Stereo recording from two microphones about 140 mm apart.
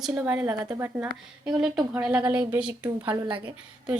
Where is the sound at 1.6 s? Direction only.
5° right (ahead or behind).